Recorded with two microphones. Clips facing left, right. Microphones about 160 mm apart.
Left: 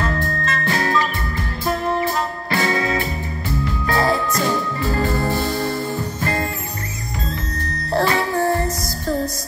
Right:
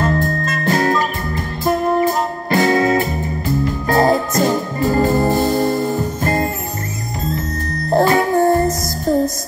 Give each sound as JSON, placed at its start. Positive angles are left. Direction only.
{"t": 0.0, "sound": "music", "side_deg": -45}